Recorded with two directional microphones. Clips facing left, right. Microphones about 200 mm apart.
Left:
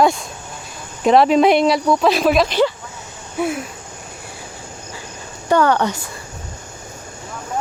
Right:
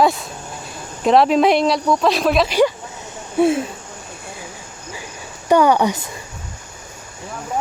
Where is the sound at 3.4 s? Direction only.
25° right (ahead or behind).